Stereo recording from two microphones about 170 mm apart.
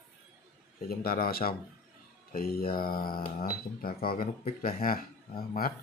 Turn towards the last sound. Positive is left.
turn(degrees=60)  # may be behind; listen again after turning